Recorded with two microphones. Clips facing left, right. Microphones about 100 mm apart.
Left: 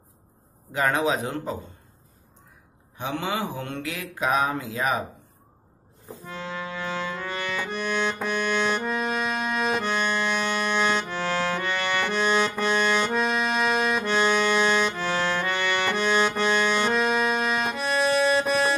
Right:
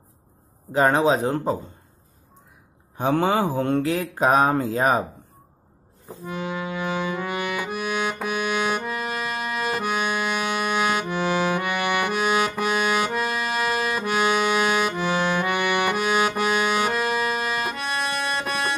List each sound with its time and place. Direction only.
0.7 s mantra: 30° right (ahead or behind)
3.0 s mantra: 40° right (ahead or behind)
6.0 s music: 15° right (ahead or behind); by 18.8 s centre (ahead or behind)